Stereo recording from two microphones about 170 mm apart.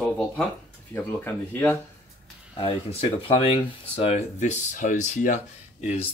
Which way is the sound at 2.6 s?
35° left (ahead or behind).